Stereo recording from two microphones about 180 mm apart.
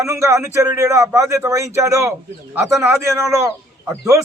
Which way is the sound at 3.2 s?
15° right (ahead or behind).